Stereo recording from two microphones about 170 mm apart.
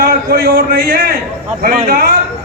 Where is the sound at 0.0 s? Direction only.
60° right (ahead or behind).